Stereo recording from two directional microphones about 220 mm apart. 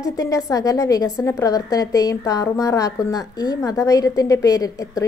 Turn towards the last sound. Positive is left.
turn(degrees=15)  # may be behind; listen again after turning